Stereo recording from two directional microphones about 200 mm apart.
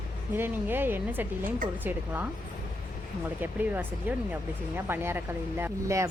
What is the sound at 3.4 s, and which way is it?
Speech, 10° right (ahead or behind).